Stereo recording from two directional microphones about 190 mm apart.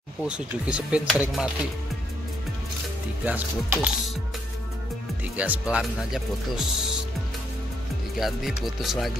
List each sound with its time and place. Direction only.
0.2 s speech: 5° right (ahead or behind)
3.3 s speech: 10° right (ahead or behind)
5.2 s speech: 10° right (ahead or behind)
8.2 s speech: centre (ahead or behind)